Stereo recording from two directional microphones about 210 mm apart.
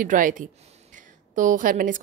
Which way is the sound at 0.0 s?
40° right (ahead or behind).